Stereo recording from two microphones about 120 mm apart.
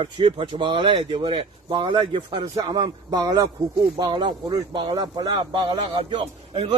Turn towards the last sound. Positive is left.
turn(degrees=-50)  # may be behind; listen again after turning